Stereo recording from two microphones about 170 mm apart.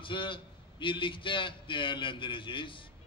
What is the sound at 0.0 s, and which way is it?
A man's voice, 30° left (ahead or behind).